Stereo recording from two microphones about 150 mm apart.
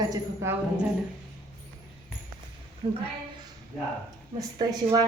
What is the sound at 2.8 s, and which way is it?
Speech, 35° right (ahead or behind).